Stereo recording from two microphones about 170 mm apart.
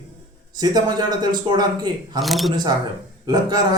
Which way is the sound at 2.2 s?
Centre (ahead or behind).